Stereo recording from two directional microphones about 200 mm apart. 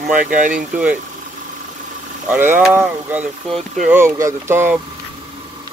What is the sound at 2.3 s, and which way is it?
Speech, 10° right (ahead or behind).